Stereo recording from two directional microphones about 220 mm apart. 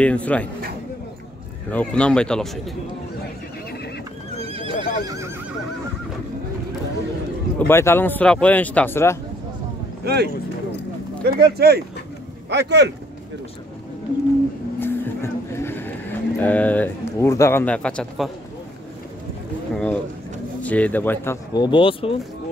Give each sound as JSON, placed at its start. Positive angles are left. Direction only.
{"t": 0.0, "sound": "speech", "side_deg": 5}
{"t": 1.7, "sound": "speech", "side_deg": 5}
{"t": 4.4, "sound": "neigh", "side_deg": -25}
{"t": 4.7, "sound": "neigh", "side_deg": 35}
{"t": 5.0, "sound": "neigh", "side_deg": -15}
{"t": 7.5, "sound": "speech", "side_deg": 10}
{"t": 10.0, "sound": "speech", "side_deg": -45}
{"t": 14.8, "sound": "cattle", "side_deg": 10}
{"t": 19.7, "sound": "speech", "side_deg": 5}